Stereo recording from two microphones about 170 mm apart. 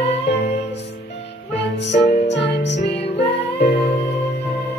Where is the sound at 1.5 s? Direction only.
90° left.